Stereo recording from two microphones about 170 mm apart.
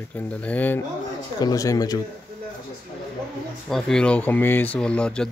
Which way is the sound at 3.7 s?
5° left (ahead or behind).